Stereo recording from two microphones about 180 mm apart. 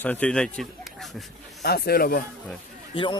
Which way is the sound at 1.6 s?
60° left (ahead or behind).